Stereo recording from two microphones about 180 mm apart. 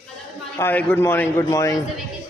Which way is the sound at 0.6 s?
10° left (ahead or behind).